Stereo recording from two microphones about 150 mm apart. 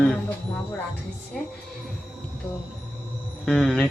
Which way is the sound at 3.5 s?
Centre (ahead or behind).